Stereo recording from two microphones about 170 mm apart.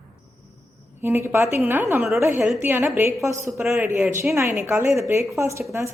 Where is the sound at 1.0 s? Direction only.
15° right (ahead or behind).